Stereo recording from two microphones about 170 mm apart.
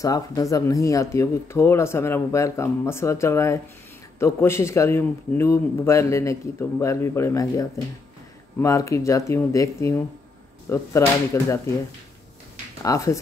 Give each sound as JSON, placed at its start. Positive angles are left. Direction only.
{"t": 0.0, "sound": "speech", "side_deg": 20}
{"t": 12.8, "sound": "speech", "side_deg": 20}